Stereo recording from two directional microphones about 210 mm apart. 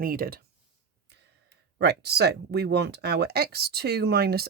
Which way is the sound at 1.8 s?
50° right (ahead or behind).